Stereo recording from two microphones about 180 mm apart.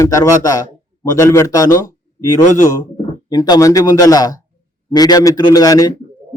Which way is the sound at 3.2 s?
20° left (ahead or behind).